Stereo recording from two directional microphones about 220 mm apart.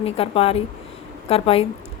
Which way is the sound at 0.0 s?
25° left (ahead or behind).